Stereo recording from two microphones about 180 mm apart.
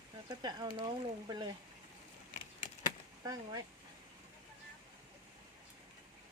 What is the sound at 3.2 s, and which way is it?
Speech, 20° right (ahead or behind).